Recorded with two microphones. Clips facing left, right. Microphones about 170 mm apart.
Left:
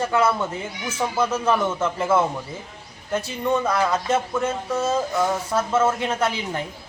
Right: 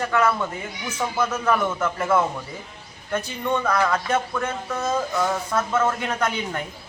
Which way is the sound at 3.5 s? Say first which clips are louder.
Even; 10° left (ahead or behind).